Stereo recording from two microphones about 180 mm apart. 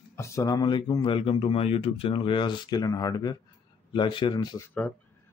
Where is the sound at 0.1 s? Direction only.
15° left (ahead or behind).